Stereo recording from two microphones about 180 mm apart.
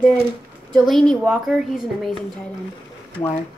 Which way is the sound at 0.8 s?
Centre (ahead or behind).